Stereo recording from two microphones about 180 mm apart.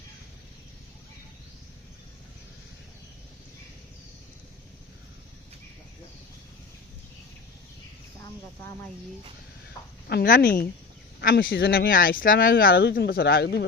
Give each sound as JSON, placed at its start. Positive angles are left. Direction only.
{"t": 10.1, "sound": "speech", "side_deg": 55}